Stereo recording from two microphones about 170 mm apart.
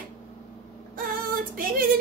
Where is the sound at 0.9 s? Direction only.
55° right (ahead or behind).